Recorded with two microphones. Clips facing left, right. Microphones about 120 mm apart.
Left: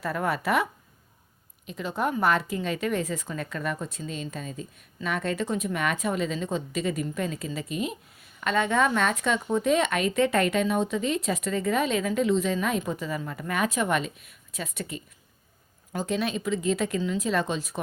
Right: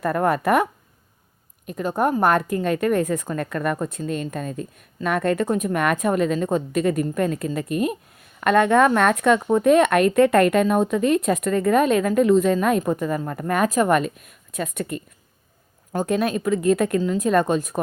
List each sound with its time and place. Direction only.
0.0 s a woman's voice: 50° right (ahead or behind)